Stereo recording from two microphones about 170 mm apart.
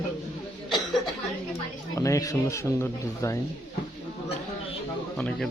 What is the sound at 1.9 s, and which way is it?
Speech, 20° left (ahead or behind).